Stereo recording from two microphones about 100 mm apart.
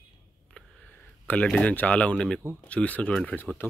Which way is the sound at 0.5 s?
15° left (ahead or behind).